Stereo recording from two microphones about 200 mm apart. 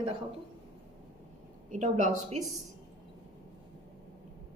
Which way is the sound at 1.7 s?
35° right (ahead or behind).